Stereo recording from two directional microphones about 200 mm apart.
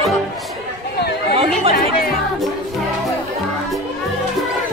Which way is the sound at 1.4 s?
30° right (ahead or behind).